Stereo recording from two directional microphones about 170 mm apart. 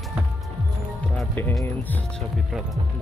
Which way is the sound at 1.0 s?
10° left (ahead or behind).